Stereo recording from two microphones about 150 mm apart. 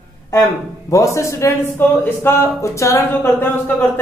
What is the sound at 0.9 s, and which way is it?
Speech, 20° left (ahead or behind).